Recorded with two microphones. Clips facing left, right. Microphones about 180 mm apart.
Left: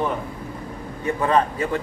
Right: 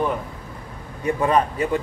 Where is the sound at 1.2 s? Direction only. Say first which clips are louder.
Even; 15° right (ahead or behind).